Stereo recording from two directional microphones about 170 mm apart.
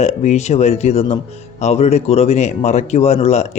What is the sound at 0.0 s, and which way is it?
Speech, 40° left (ahead or behind).